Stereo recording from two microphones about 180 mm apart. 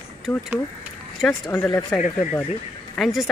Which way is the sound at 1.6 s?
20° left (ahead or behind).